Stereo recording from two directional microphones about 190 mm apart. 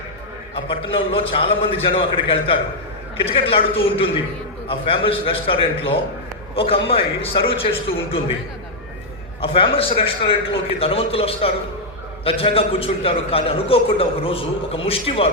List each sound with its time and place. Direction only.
0.5 s a man's voice: 30° left (ahead or behind)
9.4 s a man's voice: 30° left (ahead or behind)